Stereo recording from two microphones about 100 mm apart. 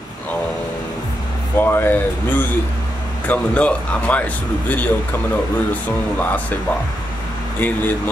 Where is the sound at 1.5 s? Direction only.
20° left (ahead or behind).